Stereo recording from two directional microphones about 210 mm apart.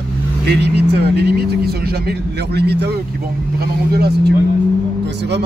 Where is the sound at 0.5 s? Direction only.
50° right (ahead or behind).